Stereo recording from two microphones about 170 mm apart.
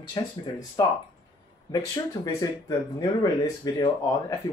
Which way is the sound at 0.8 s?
20° left (ahead or behind).